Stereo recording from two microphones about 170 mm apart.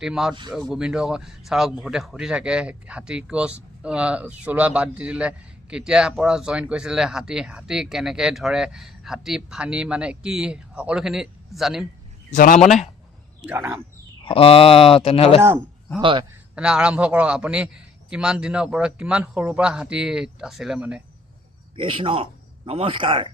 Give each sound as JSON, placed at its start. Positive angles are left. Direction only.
{"t": 0.0, "sound": "speech", "side_deg": -5}
{"t": 12.3, "sound": "a man's voice", "side_deg": 50}
{"t": 13.4, "sound": "speech", "side_deg": -10}
{"t": 14.3, "sound": "speech", "side_deg": 35}
{"t": 15.4, "sound": "speech", "side_deg": -10}
{"t": 16.0, "sound": "a man's voice", "side_deg": -30}
{"t": 16.6, "sound": "speech", "side_deg": -5}
{"t": 21.8, "sound": "speech", "side_deg": -30}